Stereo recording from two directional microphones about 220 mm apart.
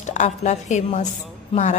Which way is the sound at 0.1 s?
30° left (ahead or behind).